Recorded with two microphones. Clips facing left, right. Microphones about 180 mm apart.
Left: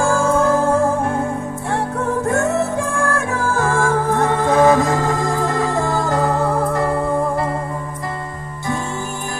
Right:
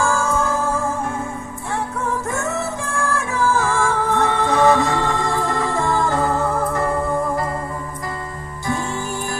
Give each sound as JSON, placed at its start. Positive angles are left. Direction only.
{"t": 0.0, "sound": "music", "side_deg": 60}
{"t": 2.5, "sound": "music", "side_deg": 55}